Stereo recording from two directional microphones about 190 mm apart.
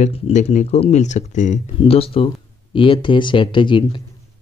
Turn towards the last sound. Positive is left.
turn(degrees=25)  # may be behind; listen again after turning